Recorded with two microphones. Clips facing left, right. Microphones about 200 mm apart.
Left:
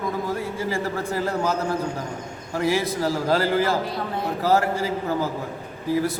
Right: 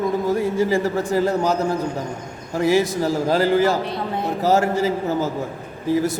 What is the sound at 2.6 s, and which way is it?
A man's voice, 20° right (ahead or behind).